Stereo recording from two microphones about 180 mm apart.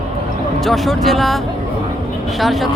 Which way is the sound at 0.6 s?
Centre (ahead or behind).